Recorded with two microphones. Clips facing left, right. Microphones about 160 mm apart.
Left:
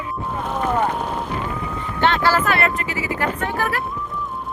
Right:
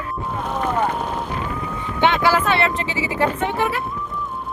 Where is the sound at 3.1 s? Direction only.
25° right (ahead or behind).